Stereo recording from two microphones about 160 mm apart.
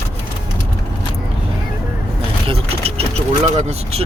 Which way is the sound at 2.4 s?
35° right (ahead or behind).